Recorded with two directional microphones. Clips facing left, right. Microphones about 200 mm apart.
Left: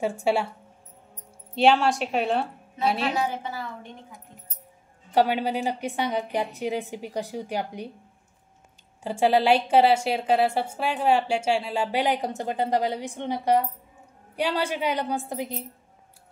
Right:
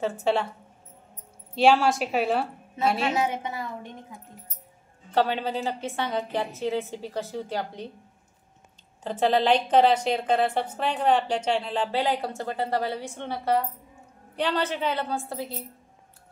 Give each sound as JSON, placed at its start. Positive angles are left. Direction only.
{"t": 0.0, "sound": "a woman's voice", "side_deg": 10}
{"t": 1.5, "sound": "a woman's voice", "side_deg": 0}
{"t": 3.2, "sound": "a woman's voice", "side_deg": -20}
{"t": 5.1, "sound": "a woman's voice", "side_deg": 10}
{"t": 9.0, "sound": "a woman's voice", "side_deg": 10}